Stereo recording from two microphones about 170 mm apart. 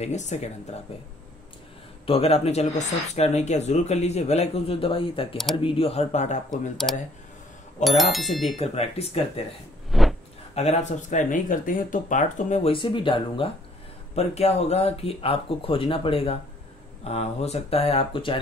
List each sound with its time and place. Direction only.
0.0 s speech: 40° left (ahead or behind)
2.0 s speech: 35° left (ahead or behind)
7.8 s speech: centre (ahead or behind)
8.5 s speech: 35° left (ahead or behind)
9.8 s a sound: centre (ahead or behind)
10.5 s speech: 40° left (ahead or behind)
12.7 s speech: 30° left (ahead or behind)